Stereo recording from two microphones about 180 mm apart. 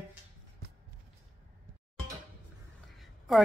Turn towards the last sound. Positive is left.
turn(degrees=0)  # may be behind; listen again after turning